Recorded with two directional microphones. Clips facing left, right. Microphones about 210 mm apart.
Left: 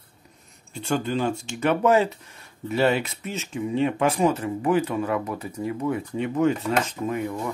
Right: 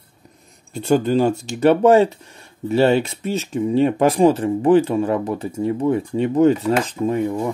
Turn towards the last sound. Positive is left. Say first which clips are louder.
# right 7 dB
turn(degrees=-30)  # may be behind; listen again after turning